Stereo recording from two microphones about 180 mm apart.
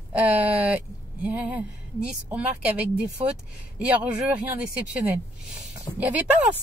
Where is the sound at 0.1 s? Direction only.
10° right (ahead or behind).